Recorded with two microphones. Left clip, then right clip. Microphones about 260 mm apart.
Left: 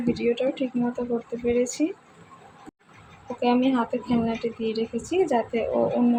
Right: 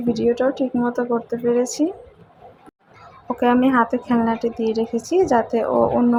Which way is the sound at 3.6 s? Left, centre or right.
Right.